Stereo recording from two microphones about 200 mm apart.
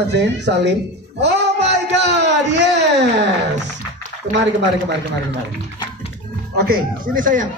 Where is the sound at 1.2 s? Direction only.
60° right (ahead or behind).